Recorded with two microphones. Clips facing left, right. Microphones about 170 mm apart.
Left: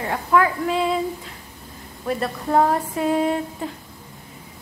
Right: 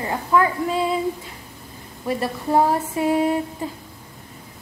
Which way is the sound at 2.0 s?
5° right (ahead or behind).